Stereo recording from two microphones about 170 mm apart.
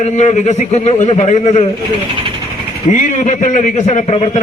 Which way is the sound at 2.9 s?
45° left (ahead or behind).